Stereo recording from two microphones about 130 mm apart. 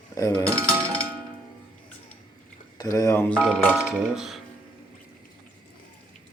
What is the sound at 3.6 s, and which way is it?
Speech, 5° right (ahead or behind).